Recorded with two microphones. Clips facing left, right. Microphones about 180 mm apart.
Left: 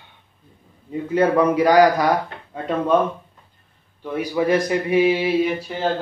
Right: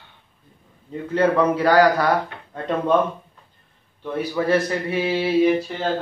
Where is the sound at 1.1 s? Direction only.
10° left (ahead or behind).